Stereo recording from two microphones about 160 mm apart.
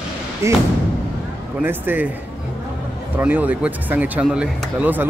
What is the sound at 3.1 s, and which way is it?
Speech, 10° right (ahead or behind).